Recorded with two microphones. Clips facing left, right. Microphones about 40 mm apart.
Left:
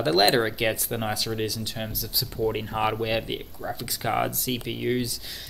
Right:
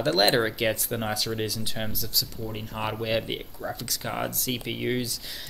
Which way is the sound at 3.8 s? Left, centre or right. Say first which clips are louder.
Left 7 dB; centre.